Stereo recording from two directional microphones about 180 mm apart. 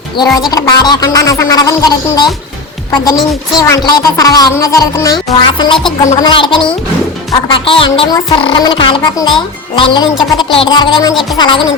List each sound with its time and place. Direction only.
0.5 s speech: 20° left (ahead or behind)